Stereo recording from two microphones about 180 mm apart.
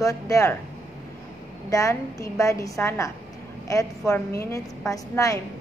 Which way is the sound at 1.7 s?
15° left (ahead or behind).